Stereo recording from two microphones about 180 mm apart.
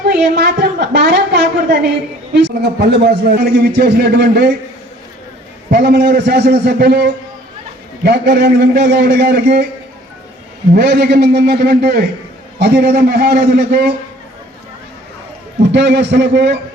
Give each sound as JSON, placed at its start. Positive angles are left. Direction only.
{"t": 0.0, "sound": "a man's voice", "side_deg": -65}
{"t": 5.7, "sound": "a man's voice", "side_deg": -65}
{"t": 10.8, "sound": "a man's voice", "side_deg": -65}
{"t": 15.7, "sound": "a man's voice", "side_deg": -70}